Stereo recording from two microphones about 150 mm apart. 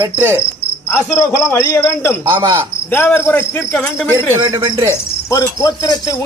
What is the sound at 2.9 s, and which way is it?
Cricket, 15° left (ahead or behind).